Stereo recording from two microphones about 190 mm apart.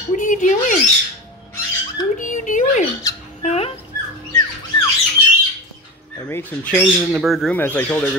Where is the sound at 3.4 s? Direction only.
35° left (ahead or behind).